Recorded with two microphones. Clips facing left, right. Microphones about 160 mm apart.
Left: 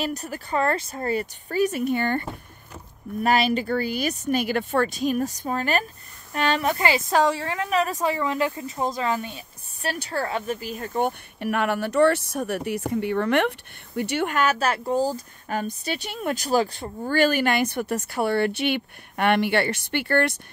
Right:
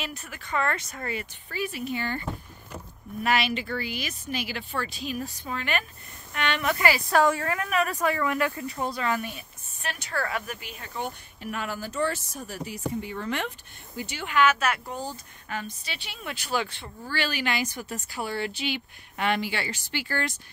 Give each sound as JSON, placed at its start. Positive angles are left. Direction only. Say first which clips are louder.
{"t": 0.0, "sound": "speech", "louder": "left 9 dB", "side_deg": 40}
{"t": 3.3, "sound": "a woman's voice", "louder": "left 5 dB", "side_deg": 40}
{"t": 14.3, "sound": "speech", "louder": "right 4 dB", "side_deg": 40}